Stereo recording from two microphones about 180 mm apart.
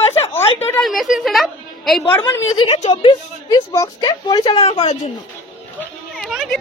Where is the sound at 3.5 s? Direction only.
20° left (ahead or behind).